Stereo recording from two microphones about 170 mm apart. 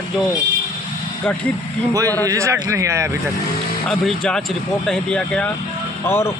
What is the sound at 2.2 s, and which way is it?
Speech, 20° right (ahead or behind).